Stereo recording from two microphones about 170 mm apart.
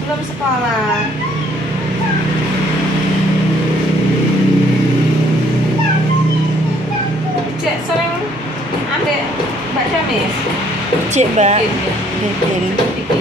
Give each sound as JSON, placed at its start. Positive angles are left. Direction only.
{"t": 11.1, "sound": "speech", "side_deg": -45}